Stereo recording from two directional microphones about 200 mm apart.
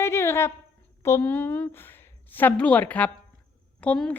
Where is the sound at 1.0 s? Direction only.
10° left (ahead or behind).